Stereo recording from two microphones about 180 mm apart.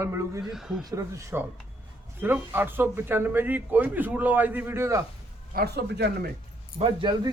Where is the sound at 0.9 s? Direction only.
15° right (ahead or behind).